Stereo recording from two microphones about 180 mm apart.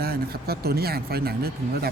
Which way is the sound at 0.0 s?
60° right (ahead or behind).